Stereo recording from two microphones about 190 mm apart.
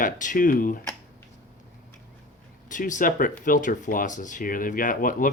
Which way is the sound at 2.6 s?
40° left (ahead or behind).